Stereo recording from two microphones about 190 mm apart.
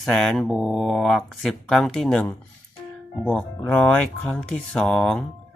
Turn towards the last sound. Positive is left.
turn(degrees=5)  # may be behind; listen again after turning